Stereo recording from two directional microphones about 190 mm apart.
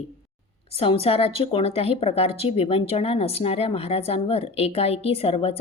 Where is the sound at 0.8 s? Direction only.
30° left (ahead or behind).